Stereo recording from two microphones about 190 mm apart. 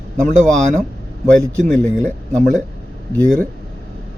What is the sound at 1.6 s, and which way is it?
Speech, 5° left (ahead or behind).